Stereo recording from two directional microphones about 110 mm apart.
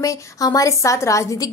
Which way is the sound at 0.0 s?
30° left (ahead or behind).